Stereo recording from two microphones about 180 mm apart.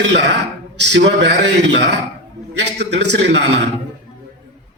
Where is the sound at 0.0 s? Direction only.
75° right (ahead or behind).